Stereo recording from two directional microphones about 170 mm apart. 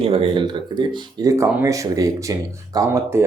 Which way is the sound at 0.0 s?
35° right (ahead or behind).